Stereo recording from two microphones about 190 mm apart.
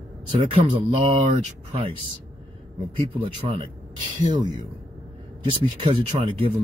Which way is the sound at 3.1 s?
30° right (ahead or behind).